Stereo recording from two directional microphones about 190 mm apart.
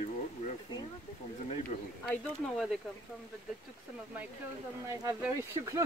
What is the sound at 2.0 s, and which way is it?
Speech, centre (ahead or behind).